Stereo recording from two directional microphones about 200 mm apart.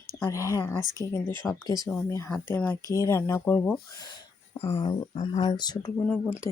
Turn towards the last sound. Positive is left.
turn(degrees=10)  # may be behind; listen again after turning